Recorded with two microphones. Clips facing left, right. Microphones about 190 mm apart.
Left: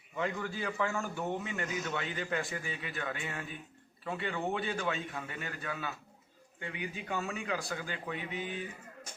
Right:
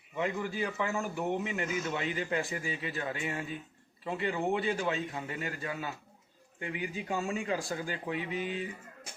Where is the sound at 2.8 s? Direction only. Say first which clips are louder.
Right 3 dB; 30° right (ahead or behind).